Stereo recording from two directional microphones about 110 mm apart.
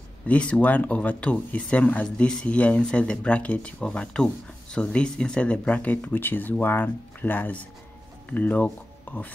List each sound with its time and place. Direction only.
0.3 s speech: 10° left (ahead or behind)